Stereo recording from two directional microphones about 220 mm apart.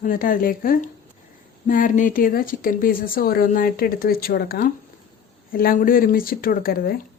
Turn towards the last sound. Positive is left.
turn(degrees=40)  # may be behind; listen again after turning